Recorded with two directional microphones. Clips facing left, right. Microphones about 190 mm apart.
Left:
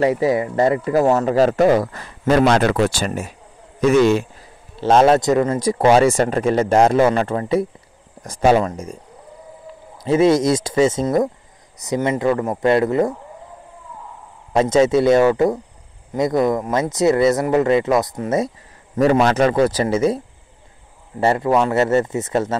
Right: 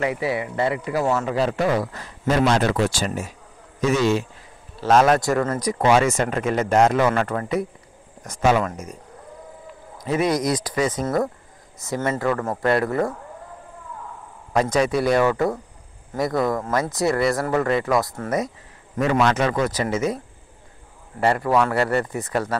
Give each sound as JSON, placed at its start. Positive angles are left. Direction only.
{"t": 0.0, "sound": "speech", "side_deg": 40}
{"t": 4.7, "sound": "a man's voice", "side_deg": 30}
{"t": 10.0, "sound": "speech", "side_deg": 25}
{"t": 14.5, "sound": "speech", "side_deg": 25}
{"t": 18.9, "sound": "a man's voice", "side_deg": 40}
{"t": 21.2, "sound": "speech", "side_deg": 25}